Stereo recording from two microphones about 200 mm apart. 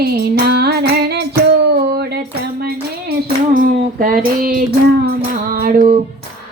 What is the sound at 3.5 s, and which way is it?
Child singing, 45° right (ahead or behind).